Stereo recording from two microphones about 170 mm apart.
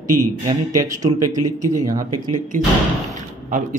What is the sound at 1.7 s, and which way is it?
Speech, 20° right (ahead or behind).